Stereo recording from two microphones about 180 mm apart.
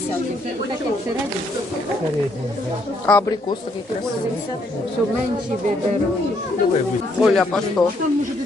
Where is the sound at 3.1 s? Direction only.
5° left (ahead or behind).